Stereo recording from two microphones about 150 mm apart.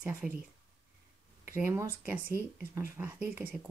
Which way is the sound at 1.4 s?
15° right (ahead or behind).